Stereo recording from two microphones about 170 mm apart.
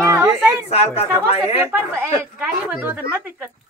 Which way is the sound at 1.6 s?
15° right (ahead or behind).